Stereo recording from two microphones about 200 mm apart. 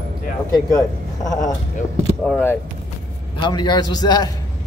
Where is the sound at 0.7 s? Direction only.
20° left (ahead or behind).